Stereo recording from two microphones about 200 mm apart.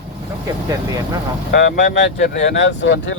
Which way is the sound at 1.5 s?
60° left (ahead or behind).